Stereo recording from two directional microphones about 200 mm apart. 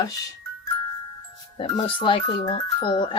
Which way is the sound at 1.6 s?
25° left (ahead or behind).